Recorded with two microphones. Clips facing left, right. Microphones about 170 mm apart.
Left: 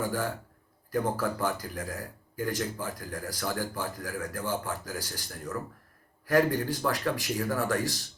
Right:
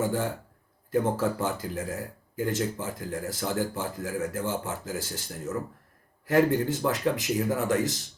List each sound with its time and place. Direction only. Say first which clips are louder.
0.0 s speech: right 3 dB; 25° right (ahead or behind)